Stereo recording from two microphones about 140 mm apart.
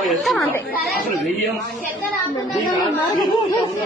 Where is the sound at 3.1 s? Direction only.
30° left (ahead or behind).